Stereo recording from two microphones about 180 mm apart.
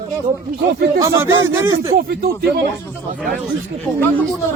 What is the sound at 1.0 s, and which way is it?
Speech, 15° right (ahead or behind).